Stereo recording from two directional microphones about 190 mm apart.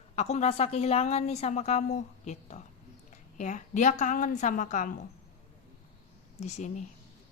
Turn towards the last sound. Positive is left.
turn(degrees=40)  # may be behind; listen again after turning